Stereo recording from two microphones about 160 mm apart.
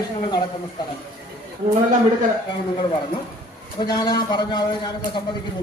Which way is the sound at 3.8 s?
25° left (ahead or behind).